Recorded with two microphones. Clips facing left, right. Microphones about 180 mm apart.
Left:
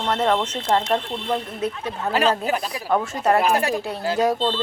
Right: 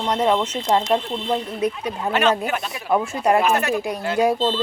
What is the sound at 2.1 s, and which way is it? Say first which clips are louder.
Speech: even; 35° left (ahead or behind).